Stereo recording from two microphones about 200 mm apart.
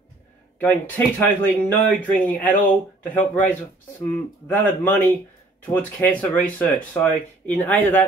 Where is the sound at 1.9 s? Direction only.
10° left (ahead or behind).